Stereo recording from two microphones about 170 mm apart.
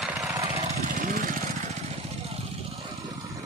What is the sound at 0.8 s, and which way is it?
Vehicle, 50° right (ahead or behind).